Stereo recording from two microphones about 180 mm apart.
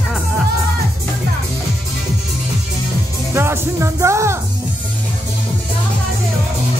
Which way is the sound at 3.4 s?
15° right (ahead or behind).